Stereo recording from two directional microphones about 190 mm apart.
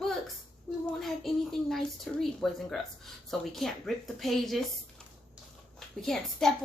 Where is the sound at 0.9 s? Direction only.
Centre (ahead or behind).